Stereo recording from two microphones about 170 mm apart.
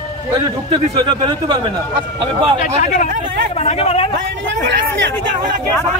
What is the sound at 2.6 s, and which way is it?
A man's voice, 45° left (ahead or behind).